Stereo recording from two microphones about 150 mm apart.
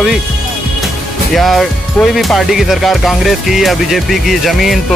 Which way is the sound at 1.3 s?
Centre (ahead or behind).